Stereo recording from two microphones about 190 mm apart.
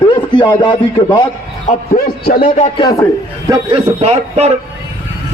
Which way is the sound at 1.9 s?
50° left (ahead or behind).